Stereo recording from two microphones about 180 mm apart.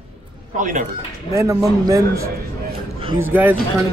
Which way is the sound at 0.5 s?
45° right (ahead or behind).